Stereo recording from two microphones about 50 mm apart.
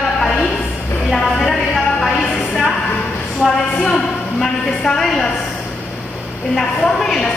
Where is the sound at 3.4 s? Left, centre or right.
Centre.